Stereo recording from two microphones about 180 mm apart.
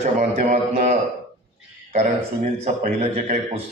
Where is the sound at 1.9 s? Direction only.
40° right (ahead or behind).